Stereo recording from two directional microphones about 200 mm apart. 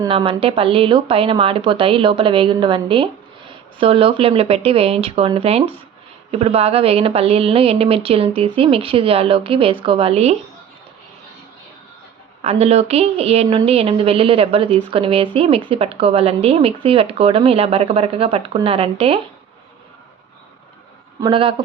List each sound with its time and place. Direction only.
0.1 s a woman's voice: 25° right (ahead or behind)
12.4 s a woman's voice: 30° right (ahead or behind)
21.2 s a woman's voice: 25° right (ahead or behind)